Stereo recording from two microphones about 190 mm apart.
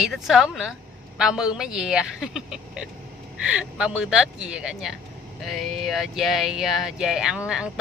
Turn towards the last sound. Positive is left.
turn(degrees=-5)  # may be behind; listen again after turning